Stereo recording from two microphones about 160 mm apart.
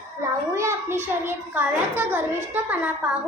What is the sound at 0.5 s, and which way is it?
A child's voice, 15° right (ahead or behind).